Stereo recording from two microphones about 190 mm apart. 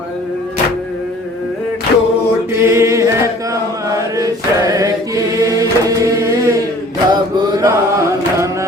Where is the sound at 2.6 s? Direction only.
15° right (ahead or behind).